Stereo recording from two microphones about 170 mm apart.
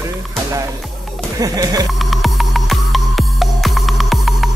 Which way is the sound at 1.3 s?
20° right (ahead or behind).